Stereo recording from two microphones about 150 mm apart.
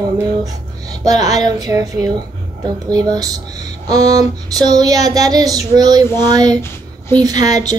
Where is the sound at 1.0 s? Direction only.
25° right (ahead or behind).